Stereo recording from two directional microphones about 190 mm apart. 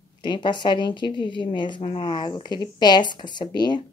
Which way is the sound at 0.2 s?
25° left (ahead or behind).